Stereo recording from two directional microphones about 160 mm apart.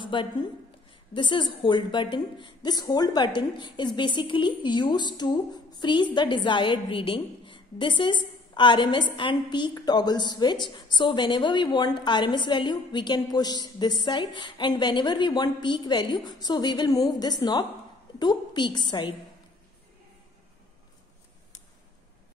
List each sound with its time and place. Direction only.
0.0 s a woman's voice: 30° left (ahead or behind)